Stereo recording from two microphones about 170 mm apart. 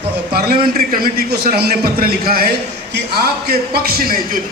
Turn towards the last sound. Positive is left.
turn(degrees=-60)  # may be behind; listen again after turning